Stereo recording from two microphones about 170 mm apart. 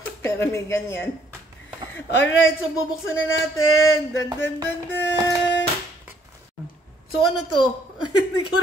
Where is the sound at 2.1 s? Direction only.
90° left.